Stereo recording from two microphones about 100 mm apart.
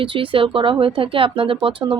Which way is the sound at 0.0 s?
60° right (ahead or behind).